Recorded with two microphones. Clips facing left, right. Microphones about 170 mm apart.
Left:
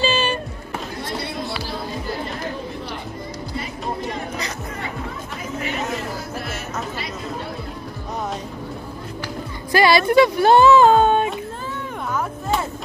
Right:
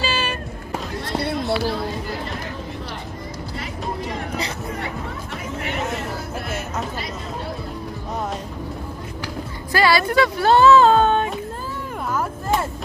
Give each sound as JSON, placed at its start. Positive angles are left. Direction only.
{"t": 0.0, "sound": "music", "side_deg": 25}
{"t": 1.2, "sound": "music", "side_deg": -55}
{"t": 9.7, "sound": "music", "side_deg": 20}
{"t": 12.1, "sound": "a sound", "side_deg": -5}